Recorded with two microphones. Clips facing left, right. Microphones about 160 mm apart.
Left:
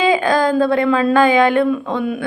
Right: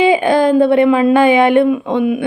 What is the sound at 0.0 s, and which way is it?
Speech, 25° right (ahead or behind).